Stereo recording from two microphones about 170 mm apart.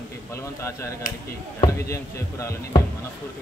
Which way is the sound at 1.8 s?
15° left (ahead or behind).